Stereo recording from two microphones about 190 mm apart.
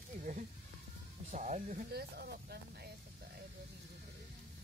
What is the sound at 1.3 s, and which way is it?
Speech, 40° right (ahead or behind).